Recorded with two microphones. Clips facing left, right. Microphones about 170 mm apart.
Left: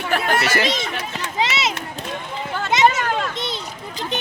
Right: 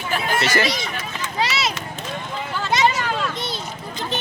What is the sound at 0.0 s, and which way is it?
Chatter, 65° left (ahead or behind).